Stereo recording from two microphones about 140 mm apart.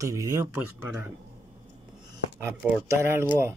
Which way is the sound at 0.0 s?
25° right (ahead or behind).